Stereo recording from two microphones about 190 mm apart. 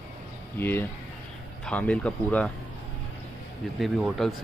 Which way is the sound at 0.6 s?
10° left (ahead or behind).